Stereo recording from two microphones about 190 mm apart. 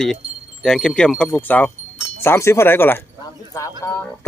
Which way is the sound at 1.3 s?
10° left (ahead or behind).